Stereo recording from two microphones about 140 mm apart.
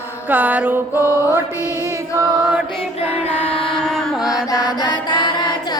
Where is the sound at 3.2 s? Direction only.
45° left (ahead or behind).